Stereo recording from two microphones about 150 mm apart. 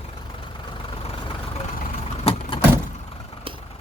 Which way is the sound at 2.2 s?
40° left (ahead or behind).